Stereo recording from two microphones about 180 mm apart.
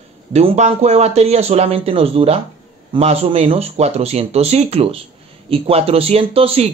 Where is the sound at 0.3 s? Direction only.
35° right (ahead or behind).